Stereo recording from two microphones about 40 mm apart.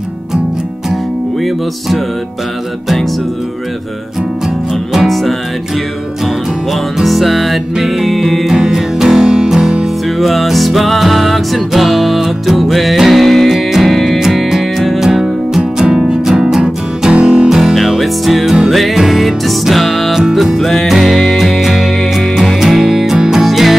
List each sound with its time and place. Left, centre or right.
1.4 s music: centre
4.9 s music: centre
10.0 s music: centre
17.1 s music: right
17.5 s music: centre
23.1 s music: centre
23.4 s music: centre